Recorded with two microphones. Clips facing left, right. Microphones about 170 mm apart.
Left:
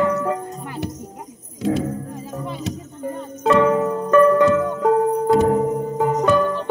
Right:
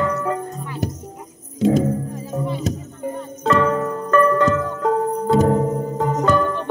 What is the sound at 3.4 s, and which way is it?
Music, 15° left (ahead or behind).